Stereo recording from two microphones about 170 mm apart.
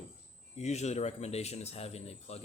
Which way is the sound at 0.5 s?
40° left (ahead or behind).